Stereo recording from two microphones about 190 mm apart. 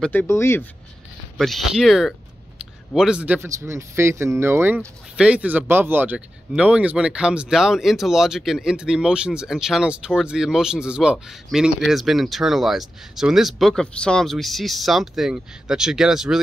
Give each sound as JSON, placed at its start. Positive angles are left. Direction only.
{"t": 0.0, "sound": "speech", "side_deg": 10}
{"t": 1.4, "sound": "a man's voice", "side_deg": 0}